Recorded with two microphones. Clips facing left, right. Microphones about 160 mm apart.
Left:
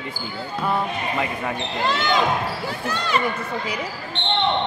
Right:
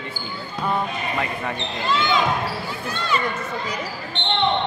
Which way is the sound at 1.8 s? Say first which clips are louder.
Even; 75° left (ahead or behind).